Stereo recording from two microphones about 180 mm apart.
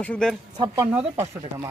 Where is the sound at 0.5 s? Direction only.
25° right (ahead or behind).